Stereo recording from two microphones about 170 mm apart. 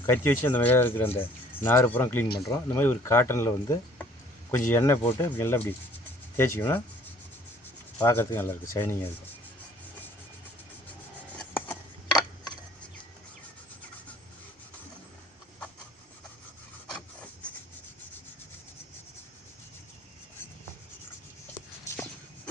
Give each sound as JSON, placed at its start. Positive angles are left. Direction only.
{"t": 0.0, "sound": "speech", "side_deg": 10}
{"t": 7.9, "sound": "speech", "side_deg": 15}
{"t": 11.3, "sound": "a sound", "side_deg": 10}